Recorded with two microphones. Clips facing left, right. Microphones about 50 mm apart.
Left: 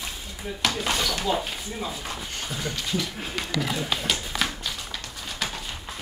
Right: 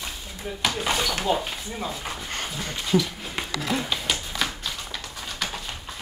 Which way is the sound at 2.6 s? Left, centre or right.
Right.